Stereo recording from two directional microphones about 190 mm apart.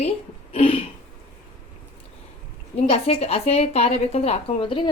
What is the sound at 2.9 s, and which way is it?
A woman's voice, 35° left (ahead or behind).